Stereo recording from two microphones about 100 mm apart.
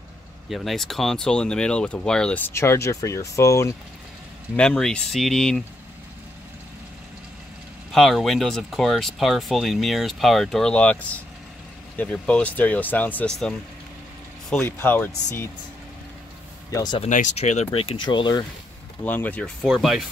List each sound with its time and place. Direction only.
0.5 s speech: centre (ahead or behind)
2.3 s speech: 25° left (ahead or behind)
4.6 s speech: 5° left (ahead or behind)
7.9 s speech: centre (ahead or behind)
14.6 s speech: 20° left (ahead or behind)
16.7 s speech: 45° left (ahead or behind)
17.0 s speech: 80° left
18.0 s speech: 50° left (ahead or behind)
19.0 s speech: 15° left (ahead or behind)
19.6 s speech: 5° right (ahead or behind)